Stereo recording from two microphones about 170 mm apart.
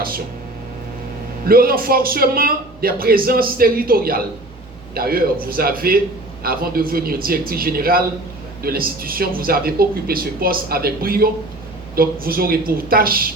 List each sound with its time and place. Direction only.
1.5 s a man's voice: 60° right (ahead or behind)